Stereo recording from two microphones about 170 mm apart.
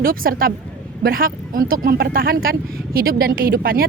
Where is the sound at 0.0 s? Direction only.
55° right (ahead or behind).